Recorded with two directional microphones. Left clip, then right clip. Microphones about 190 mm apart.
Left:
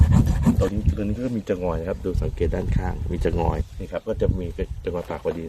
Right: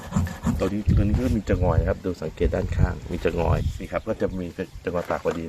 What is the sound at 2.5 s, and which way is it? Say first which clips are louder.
Speech: right 1 dB; 35° left (ahead or behind).